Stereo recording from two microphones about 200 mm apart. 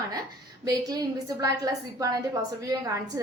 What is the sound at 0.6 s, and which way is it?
Speech, 20° right (ahead or behind).